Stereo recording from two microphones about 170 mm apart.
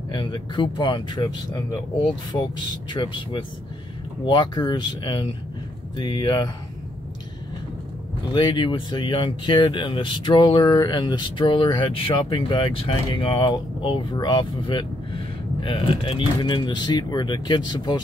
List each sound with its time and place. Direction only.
0.1 s speech: 25° left (ahead or behind)
8.3 s speech: 25° left (ahead or behind)